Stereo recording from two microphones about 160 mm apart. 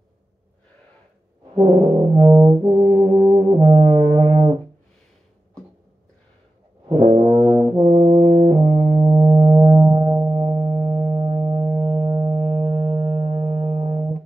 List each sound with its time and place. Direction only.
2.1 s brass instrument: 30° right (ahead or behind)
3.3 s music: 30° right (ahead or behind)
6.9 s brass instrument: 35° right (ahead or behind)